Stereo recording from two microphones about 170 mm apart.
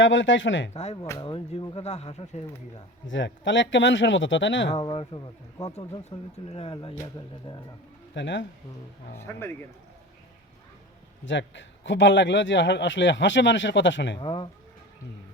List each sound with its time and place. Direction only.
0.0 s a man's voice: 90° left
0.7 s speech: 40° left (ahead or behind)
1.2 s speech: 30° left (ahead or behind)
3.1 s a man's voice: 90° left
4.7 s speech: 25° left (ahead or behind)
5.7 s speech: 40° left (ahead or behind)
8.1 s a man's voice: 90° left
9.1 s speech: 15° left (ahead or behind)
11.3 s a man's voice: 90° left
14.2 s speech: 30° left (ahead or behind)